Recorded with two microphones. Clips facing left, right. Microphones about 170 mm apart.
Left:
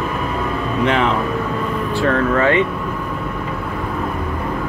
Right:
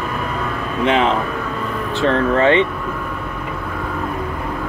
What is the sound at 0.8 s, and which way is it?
Speech, 20° right (ahead or behind).